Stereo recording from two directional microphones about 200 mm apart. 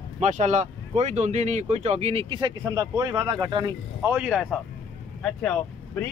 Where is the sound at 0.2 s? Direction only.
35° right (ahead or behind).